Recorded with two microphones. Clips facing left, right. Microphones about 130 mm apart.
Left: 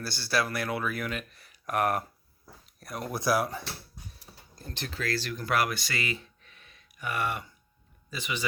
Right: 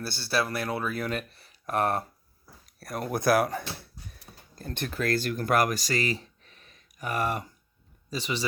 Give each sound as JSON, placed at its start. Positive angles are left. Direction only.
{"t": 0.0, "sound": "speech", "side_deg": -25}
{"t": 2.8, "sound": "speech", "side_deg": -45}
{"t": 4.7, "sound": "speech", "side_deg": -55}